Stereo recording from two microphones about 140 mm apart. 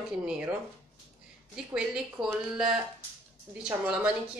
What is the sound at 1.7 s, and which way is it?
Speech, 5° right (ahead or behind).